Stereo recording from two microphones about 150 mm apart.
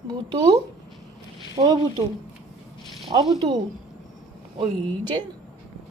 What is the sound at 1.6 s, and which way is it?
Speech, 25° right (ahead or behind).